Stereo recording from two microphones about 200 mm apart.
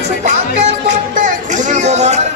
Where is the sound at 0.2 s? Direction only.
35° right (ahead or behind).